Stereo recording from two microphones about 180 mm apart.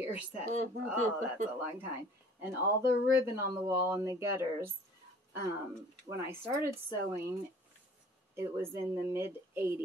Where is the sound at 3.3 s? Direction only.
15° right (ahead or behind).